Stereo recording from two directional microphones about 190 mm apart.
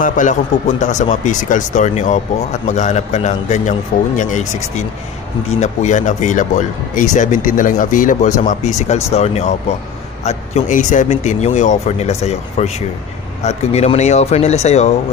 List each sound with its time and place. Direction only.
0.0 s speech: 40° left (ahead or behind)